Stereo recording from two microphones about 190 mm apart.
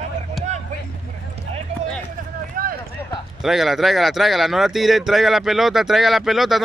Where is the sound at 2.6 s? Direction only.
50° right (ahead or behind).